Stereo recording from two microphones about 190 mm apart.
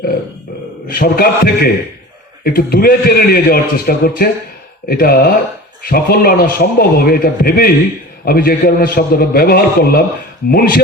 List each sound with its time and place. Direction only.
0.9 s a man's voice: 50° left (ahead or behind)